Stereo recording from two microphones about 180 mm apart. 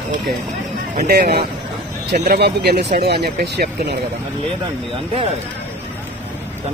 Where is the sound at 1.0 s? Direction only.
60° right (ahead or behind).